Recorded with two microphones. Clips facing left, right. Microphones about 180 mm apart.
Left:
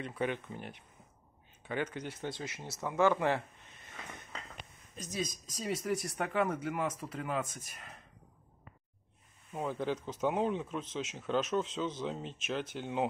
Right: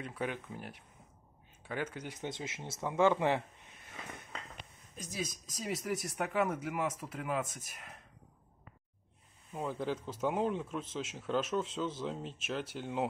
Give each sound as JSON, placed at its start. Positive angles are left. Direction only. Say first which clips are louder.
{"t": 0.0, "sound": "speech", "louder": "left 3 dB", "side_deg": -5}
{"t": 3.8, "sound": "a sound", "louder": "right 1 dB", "side_deg": -5}
{"t": 4.9, "sound": "speech", "louder": "left 2 dB", "side_deg": -10}
{"t": 9.7, "sound": "speech", "louder": "left 1 dB", "side_deg": -5}